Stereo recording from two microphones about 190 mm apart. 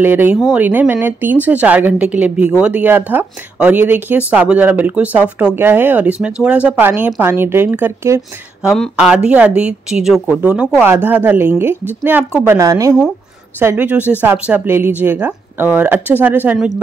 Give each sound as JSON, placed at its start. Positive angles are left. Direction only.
{"t": 0.0, "sound": "speech", "side_deg": -10}
{"t": 8.6, "sound": "a woman's voice", "side_deg": 0}